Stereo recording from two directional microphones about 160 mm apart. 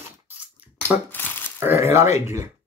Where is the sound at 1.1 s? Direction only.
10° left (ahead or behind).